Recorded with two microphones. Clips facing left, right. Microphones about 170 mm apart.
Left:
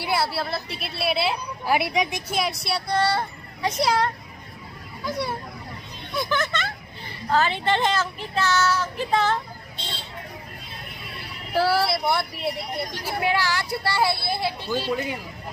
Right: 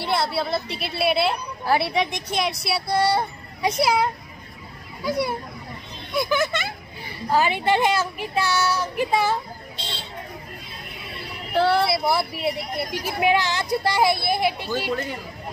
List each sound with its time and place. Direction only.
0.0 s a child's voice: 5° left (ahead or behind); by 9.4 s 10° right (ahead or behind)
11.5 s speech: 5° left (ahead or behind)
13.0 s a child's voice: 20° right (ahead or behind)